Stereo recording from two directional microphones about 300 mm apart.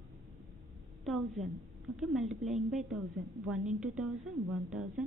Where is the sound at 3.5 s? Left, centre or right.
Centre.